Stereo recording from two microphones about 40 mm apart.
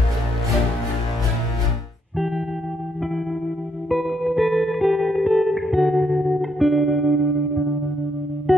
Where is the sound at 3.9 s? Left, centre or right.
Centre.